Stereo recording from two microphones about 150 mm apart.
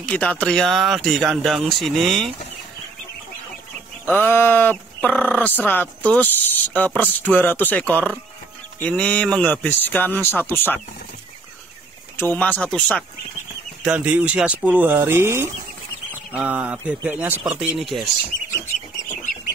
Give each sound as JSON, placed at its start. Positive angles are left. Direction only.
{"t": 0.0, "sound": "speech", "side_deg": 5}
{"t": 4.0, "sound": "speech", "side_deg": 15}
{"t": 12.2, "sound": "speech", "side_deg": 10}
{"t": 13.8, "sound": "speech", "side_deg": -10}